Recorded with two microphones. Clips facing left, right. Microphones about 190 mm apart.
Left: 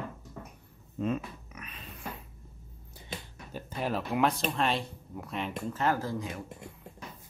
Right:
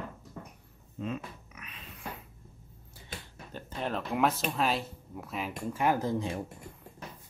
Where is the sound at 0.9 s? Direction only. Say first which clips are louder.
Left 5 dB; 45° left (ahead or behind).